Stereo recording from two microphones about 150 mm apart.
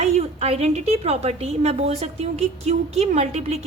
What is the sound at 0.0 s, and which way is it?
A woman's voice, 45° right (ahead or behind).